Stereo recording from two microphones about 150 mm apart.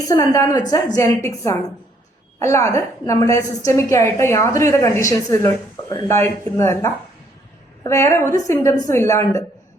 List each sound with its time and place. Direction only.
0.1 s a woman's voice: 20° left (ahead or behind)